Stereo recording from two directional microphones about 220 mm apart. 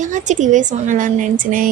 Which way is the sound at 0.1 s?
35° right (ahead or behind).